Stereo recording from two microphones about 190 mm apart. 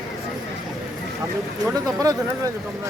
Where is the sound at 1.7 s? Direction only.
20° right (ahead or behind).